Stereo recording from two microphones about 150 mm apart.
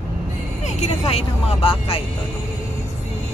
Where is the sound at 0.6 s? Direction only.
45° left (ahead or behind).